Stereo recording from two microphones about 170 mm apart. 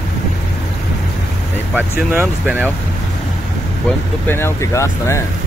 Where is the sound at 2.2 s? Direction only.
10° right (ahead or behind).